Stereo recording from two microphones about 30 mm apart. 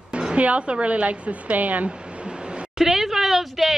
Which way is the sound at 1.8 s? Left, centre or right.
Right.